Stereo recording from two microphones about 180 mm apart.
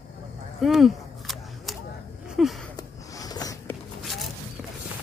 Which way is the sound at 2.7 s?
20° left (ahead or behind).